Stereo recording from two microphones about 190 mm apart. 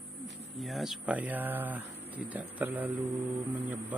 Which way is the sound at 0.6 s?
Centre (ahead or behind).